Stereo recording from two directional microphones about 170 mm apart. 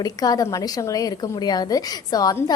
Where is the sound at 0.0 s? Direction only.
20° left (ahead or behind).